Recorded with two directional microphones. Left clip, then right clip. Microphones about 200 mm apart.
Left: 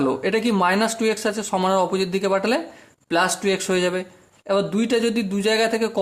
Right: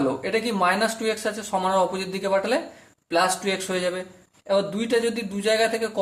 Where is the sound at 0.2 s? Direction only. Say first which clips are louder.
Left 3 dB; 45° left (ahead or behind).